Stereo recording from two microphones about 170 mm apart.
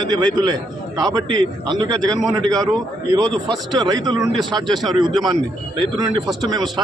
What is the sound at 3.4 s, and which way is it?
A man's voice, 25° right (ahead or behind).